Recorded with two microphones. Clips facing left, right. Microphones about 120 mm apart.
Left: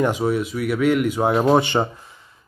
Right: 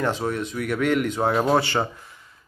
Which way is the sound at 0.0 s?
10° left (ahead or behind).